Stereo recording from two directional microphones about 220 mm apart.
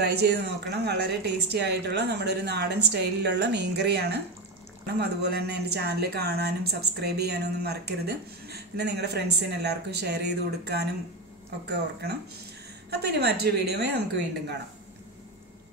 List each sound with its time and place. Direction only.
0.0 s a woman's voice: 50° right (ahead or behind)
5.2 s a woman's voice: 50° right (ahead or behind)
12.9 s a woman's voice: 45° right (ahead or behind)